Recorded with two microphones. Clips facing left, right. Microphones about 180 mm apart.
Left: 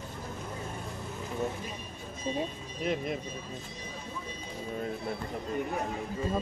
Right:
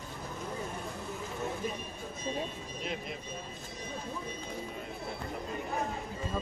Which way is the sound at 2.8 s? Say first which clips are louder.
Left 8 dB; 50° left (ahead or behind).